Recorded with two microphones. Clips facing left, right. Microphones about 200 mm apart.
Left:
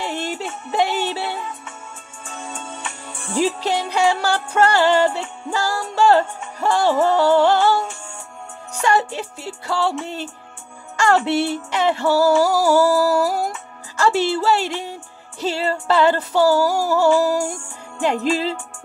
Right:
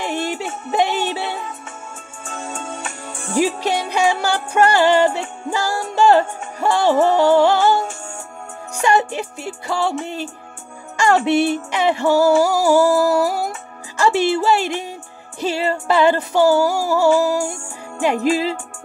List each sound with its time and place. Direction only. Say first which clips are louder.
0.0 s music: right 3 dB; 15° right (ahead or behind)
2.2 s music: right 4 dB; 45° right (ahead or behind)
3.3 s music: right 1 dB; 15° right (ahead or behind)
8.8 s music: right 2 dB; 15° right (ahead or behind)
11.0 s music: right 2 dB; 15° right (ahead or behind)
13.9 s speech: right 2 dB; 15° right (ahead or behind)
15.4 s music: right 1 dB; 15° right (ahead or behind)